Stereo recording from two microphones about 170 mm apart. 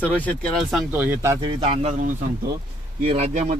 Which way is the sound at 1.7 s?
45° right (ahead or behind).